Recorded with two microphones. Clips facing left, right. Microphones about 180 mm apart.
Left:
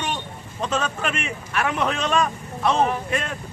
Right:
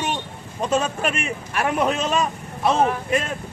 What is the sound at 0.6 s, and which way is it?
Speech, 10° right (ahead or behind).